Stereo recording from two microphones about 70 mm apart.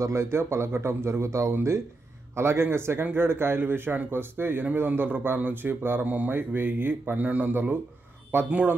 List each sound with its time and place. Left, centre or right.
0.0 s a man's voice: right
6.0 s a man's voice: right